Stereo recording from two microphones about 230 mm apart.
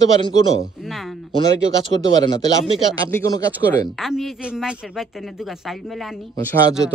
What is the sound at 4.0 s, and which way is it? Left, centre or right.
Speech, centre.